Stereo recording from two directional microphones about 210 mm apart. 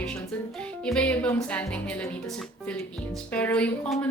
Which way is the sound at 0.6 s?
5° left (ahead or behind).